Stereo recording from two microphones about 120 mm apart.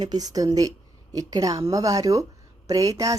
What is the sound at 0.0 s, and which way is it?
Speech, 35° right (ahead or behind).